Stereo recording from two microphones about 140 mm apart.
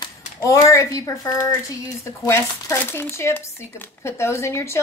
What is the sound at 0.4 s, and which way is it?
A woman's voice, 20° left (ahead or behind).